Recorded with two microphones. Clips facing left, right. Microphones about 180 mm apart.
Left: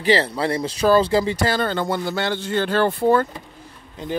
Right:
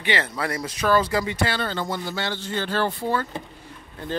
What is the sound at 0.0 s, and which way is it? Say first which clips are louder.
Speech: left 7 dB; 35° left (ahead or behind).